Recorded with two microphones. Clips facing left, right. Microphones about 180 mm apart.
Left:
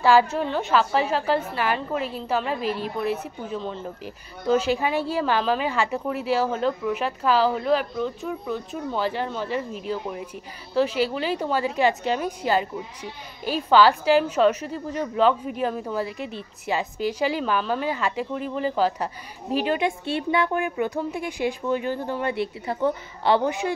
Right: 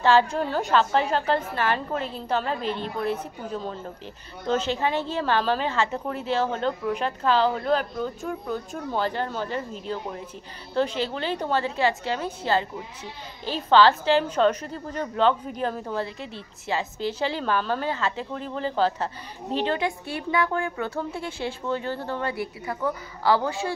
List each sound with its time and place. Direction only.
0.0 s a woman's voice: 10° left (ahead or behind)
20.1 s speech: 25° left (ahead or behind)